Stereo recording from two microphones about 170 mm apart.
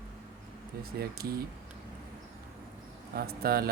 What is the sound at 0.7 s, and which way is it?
Speech, 60° right (ahead or behind).